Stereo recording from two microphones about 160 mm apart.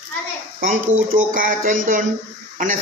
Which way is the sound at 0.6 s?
55° right (ahead or behind).